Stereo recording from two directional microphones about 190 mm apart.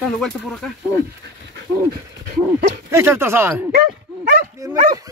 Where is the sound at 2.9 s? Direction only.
15° right (ahead or behind).